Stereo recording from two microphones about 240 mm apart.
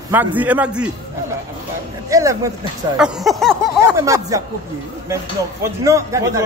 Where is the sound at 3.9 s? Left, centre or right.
Centre.